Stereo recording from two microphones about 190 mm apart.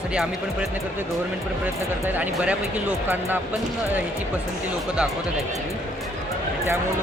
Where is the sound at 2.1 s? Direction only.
5° right (ahead or behind).